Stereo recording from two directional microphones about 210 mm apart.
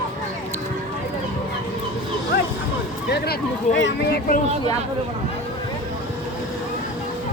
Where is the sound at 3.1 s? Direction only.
50° left (ahead or behind).